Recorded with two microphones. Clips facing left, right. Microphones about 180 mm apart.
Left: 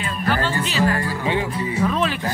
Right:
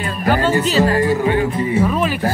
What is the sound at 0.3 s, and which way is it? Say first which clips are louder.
Music: right 7 dB; 40° right (ahead or behind).